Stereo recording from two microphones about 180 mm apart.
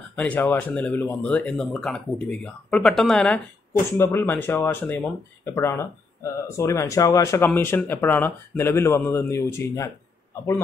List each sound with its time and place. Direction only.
0.1 s speech: 10° left (ahead or behind)